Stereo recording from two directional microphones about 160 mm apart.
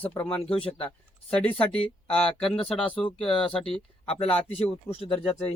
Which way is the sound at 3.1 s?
30° left (ahead or behind).